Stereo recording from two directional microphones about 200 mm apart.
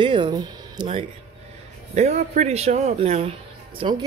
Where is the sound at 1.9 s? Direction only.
35° right (ahead or behind).